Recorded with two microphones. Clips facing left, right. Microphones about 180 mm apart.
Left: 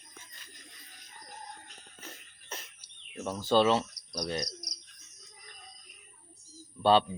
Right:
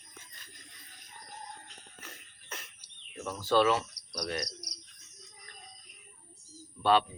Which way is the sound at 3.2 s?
25° left (ahead or behind).